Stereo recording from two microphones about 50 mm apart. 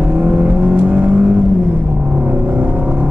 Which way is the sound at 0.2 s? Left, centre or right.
Right.